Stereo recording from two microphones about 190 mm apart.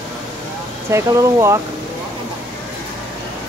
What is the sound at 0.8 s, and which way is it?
Speech, 15° right (ahead or behind).